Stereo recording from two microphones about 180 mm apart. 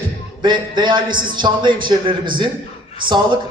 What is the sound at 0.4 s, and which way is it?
A man's voice, 25° right (ahead or behind).